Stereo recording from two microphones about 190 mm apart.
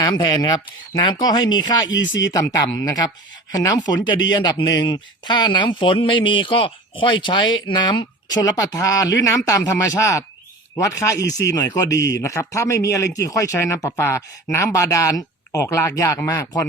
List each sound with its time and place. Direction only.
0.0 s speech: 20° left (ahead or behind)
1.9 s speech: 75° left (ahead or behind)
2.3 s speech: 15° left (ahead or behind)
11.3 s speech: 65° left (ahead or behind)
11.5 s speech: 20° left (ahead or behind)